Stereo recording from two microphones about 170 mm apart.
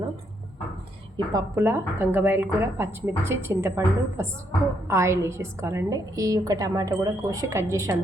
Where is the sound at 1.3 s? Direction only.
15° right (ahead or behind).